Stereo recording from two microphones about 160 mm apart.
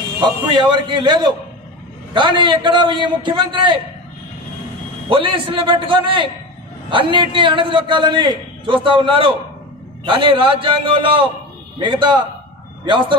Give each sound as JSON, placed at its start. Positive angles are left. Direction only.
{"t": 0.2, "sound": "a man's voice", "side_deg": -30}
{"t": 5.1, "sound": "a man's voice", "side_deg": -35}